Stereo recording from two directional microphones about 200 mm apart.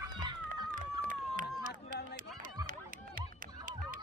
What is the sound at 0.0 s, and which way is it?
Children playing, 20° right (ahead or behind).